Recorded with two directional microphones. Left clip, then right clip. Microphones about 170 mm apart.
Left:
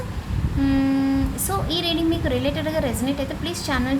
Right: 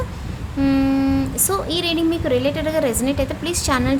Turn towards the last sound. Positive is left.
turn(degrees=-25)  # may be behind; listen again after turning